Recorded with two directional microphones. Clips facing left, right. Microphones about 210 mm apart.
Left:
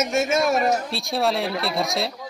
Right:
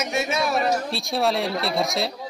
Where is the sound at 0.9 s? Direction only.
Centre (ahead or behind).